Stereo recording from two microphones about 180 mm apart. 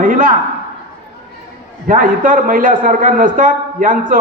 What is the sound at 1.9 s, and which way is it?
A man's voice, 50° right (ahead or behind).